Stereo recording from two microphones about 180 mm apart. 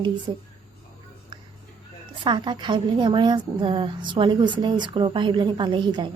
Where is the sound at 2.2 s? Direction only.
25° right (ahead or behind).